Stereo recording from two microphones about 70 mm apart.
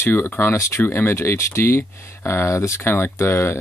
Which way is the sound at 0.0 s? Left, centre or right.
Left.